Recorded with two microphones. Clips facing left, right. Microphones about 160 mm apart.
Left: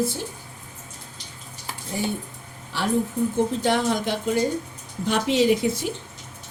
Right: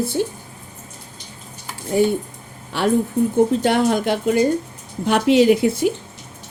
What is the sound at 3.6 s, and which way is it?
Speech, 60° right (ahead or behind).